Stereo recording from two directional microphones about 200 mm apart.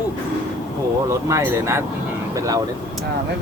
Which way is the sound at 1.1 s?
15° right (ahead or behind).